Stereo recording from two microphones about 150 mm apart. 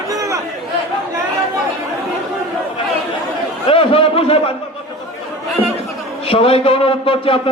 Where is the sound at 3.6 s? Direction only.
40° left (ahead or behind).